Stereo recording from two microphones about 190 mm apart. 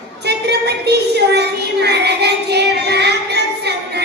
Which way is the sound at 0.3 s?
60° right (ahead or behind).